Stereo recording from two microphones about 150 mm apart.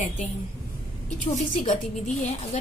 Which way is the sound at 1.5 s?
50° left (ahead or behind).